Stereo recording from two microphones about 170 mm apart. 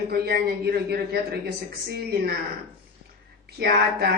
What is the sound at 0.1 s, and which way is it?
A man's voice, 70° right (ahead or behind).